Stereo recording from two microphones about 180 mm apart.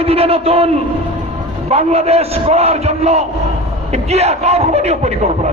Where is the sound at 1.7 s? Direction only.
35° right (ahead or behind).